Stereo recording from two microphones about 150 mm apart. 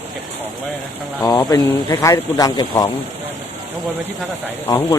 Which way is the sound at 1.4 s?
20° left (ahead or behind).